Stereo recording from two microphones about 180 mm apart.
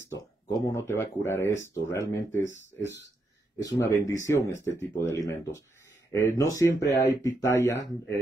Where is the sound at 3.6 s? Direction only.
20° left (ahead or behind).